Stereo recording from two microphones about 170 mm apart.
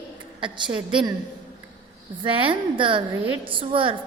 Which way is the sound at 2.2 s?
30° right (ahead or behind).